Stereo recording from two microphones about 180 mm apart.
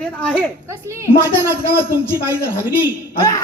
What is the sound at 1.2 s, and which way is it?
Speech, 10° left (ahead or behind).